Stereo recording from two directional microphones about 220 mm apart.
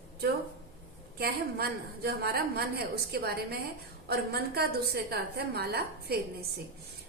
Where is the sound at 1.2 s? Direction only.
45° right (ahead or behind).